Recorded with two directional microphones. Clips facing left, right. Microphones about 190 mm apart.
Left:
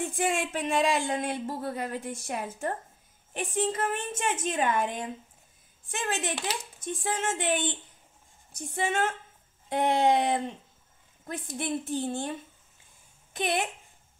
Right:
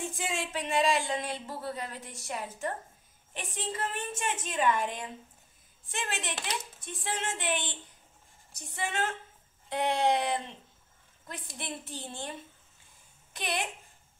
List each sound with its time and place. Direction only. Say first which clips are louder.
0.0 s speech: left 6 dB; 55° left (ahead or behind)
13.4 s speech: left 5 dB; 55° left (ahead or behind)